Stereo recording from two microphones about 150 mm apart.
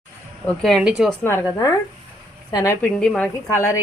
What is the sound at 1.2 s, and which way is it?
A woman's voice, 20° left (ahead or behind).